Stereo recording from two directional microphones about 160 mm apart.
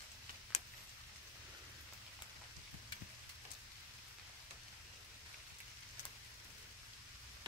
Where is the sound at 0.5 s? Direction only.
45° left (ahead or behind).